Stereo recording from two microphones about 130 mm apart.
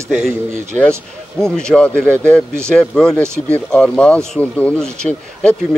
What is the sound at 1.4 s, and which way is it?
Speech, 5° left (ahead or behind).